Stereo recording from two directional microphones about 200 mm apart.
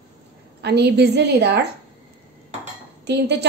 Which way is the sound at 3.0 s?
60° right (ahead or behind).